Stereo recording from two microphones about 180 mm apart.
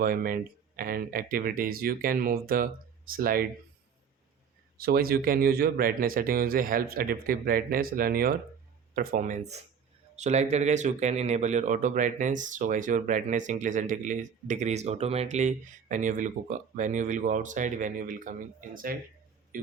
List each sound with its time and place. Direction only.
0.0 s speech: 50° right (ahead or behind)
4.8 s speech: 55° right (ahead or behind)